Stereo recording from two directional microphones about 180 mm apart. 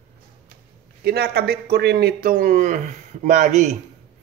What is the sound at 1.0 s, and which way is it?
Speech, 60° right (ahead or behind).